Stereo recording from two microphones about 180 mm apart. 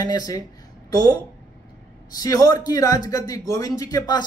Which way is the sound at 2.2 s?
20° left (ahead or behind).